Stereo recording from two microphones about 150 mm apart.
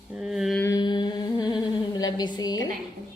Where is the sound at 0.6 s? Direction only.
25° left (ahead or behind).